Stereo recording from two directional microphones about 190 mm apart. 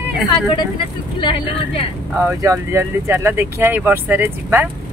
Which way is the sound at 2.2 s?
15° right (ahead or behind).